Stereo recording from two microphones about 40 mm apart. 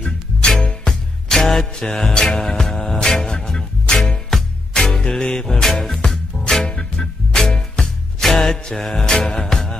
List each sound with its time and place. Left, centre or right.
0.6 s music: centre
1.3 s music: centre
6.7 s music: centre